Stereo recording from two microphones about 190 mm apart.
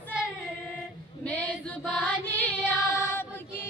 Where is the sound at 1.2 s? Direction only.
10° left (ahead or behind).